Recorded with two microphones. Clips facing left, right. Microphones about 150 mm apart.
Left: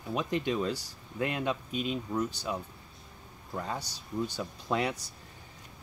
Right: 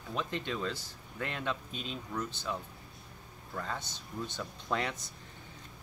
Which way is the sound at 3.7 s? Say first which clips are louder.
Left 6 dB; 35° left (ahead or behind).